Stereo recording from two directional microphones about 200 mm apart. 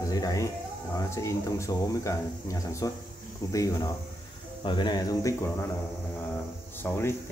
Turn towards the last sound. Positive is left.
turn(degrees=10)  # may be behind; listen again after turning